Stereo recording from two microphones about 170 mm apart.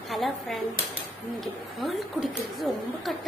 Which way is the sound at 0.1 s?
Centre (ahead or behind).